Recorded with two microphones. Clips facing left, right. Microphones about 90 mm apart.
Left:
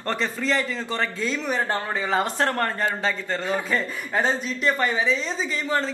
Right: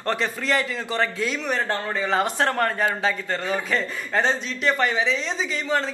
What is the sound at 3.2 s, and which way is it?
A woman's voice, 20° left (ahead or behind).